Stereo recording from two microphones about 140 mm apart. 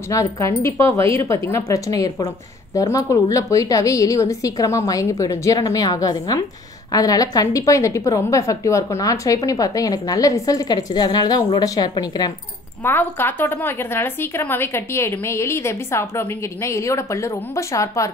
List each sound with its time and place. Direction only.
0.1 s a woman's voice: 20° left (ahead or behind)
12.8 s a woman's voice: 15° left (ahead or behind)